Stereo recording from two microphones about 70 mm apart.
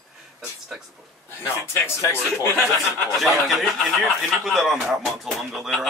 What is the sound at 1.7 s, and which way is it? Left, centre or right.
Speech, left.